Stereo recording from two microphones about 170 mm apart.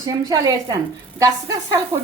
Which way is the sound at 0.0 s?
20° right (ahead or behind).